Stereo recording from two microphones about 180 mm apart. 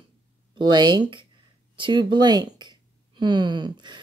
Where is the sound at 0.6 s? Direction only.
25° right (ahead or behind).